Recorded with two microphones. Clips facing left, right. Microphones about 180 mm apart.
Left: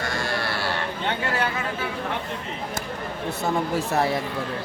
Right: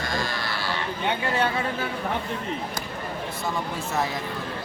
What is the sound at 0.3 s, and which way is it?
Sheep, 65° left (ahead or behind).